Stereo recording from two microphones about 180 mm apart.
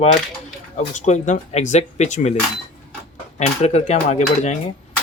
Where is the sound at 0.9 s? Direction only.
40° left (ahead or behind).